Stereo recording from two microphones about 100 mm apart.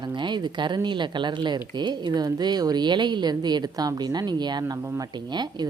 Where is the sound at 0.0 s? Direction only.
50° right (ahead or behind).